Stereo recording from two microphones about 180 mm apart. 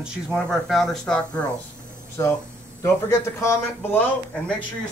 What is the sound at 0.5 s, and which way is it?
Speech, centre (ahead or behind).